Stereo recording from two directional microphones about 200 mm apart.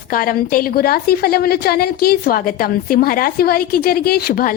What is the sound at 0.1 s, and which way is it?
A woman's voice, 45° left (ahead or behind).